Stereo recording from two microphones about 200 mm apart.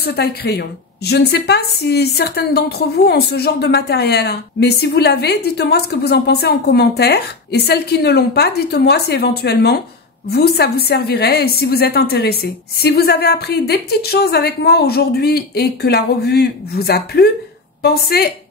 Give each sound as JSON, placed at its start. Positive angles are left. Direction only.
{"t": 0.0, "sound": "a woman's voice", "side_deg": 55}